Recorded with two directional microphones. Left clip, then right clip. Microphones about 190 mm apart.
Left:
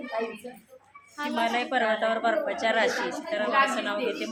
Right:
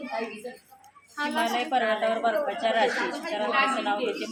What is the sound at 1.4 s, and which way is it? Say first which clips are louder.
A woman's voice: even; 5° left (ahead or behind).